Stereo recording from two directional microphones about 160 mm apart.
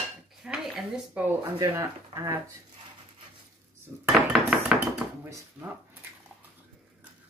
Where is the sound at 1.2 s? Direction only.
15° right (ahead or behind).